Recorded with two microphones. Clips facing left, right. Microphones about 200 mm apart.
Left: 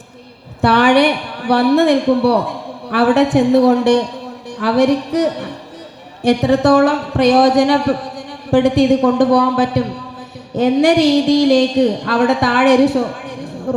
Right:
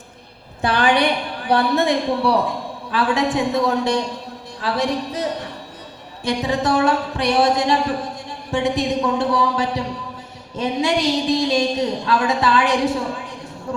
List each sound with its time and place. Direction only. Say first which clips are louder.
0.6 s a woman's voice: left 6 dB; 65° left (ahead or behind)